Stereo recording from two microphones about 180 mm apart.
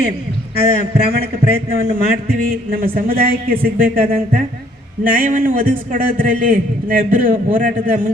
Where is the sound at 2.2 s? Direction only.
55° right (ahead or behind).